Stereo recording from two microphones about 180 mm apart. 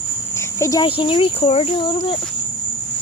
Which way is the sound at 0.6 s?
20° left (ahead or behind).